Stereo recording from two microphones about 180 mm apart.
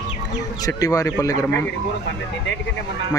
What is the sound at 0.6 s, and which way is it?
Speech, 20° left (ahead or behind).